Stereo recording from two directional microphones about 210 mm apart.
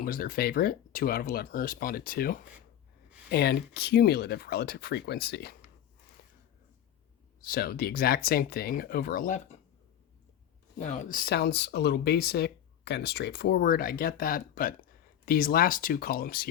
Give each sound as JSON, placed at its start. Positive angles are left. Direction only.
{"t": 0.0, "sound": "speech", "side_deg": 45}
{"t": 6.2, "sound": "a sound", "side_deg": 45}
{"t": 7.4, "sound": "speech", "side_deg": 45}
{"t": 10.8, "sound": "speech", "side_deg": 35}